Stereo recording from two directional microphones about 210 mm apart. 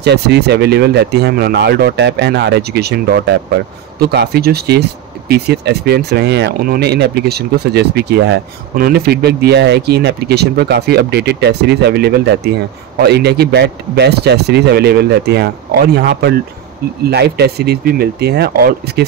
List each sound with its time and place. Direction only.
0.0 s speech: 50° right (ahead or behind)